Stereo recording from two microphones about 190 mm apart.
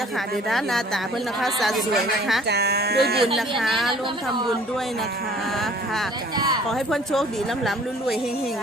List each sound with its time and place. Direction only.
1.4 s speech: centre (ahead or behind)
2.5 s speech: 60° right (ahead or behind)
3.6 s speech: centre (ahead or behind)
6.3 s speech: 20° right (ahead or behind)
6.7 s speech: centre (ahead or behind)